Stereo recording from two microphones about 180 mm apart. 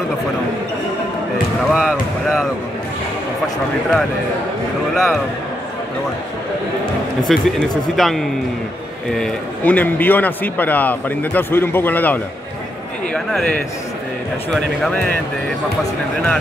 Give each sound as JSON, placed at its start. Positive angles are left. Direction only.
{"t": 1.7, "sound": "basketball bounce", "side_deg": -5}
{"t": 4.9, "sound": "speech", "side_deg": 0}
{"t": 7.3, "sound": "a man's voice", "side_deg": 0}
{"t": 13.1, "sound": "a sound", "side_deg": 0}
{"t": 14.5, "sound": "speech", "side_deg": 5}